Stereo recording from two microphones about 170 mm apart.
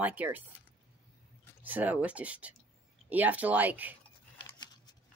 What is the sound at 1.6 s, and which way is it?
Speech, 10° right (ahead or behind).